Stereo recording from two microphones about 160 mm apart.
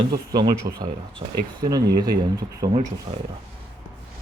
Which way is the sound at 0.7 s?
50° right (ahead or behind).